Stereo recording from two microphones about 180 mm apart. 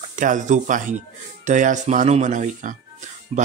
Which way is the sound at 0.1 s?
45° right (ahead or behind).